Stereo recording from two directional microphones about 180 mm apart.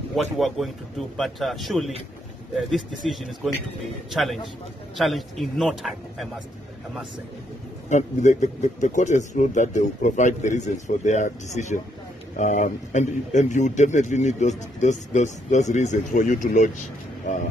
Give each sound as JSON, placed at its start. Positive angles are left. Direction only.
{"t": 0.1, "sound": "a man's voice", "side_deg": 0}
{"t": 7.9, "sound": "speech", "side_deg": 40}